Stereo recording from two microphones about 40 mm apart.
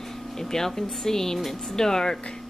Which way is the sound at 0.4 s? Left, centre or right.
Centre.